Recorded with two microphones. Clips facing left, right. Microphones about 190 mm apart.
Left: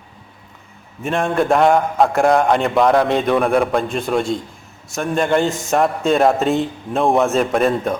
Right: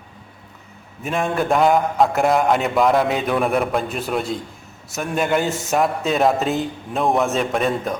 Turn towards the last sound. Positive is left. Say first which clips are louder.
# left 4 dB
turn(degrees=0)  # may be behind; listen again after turning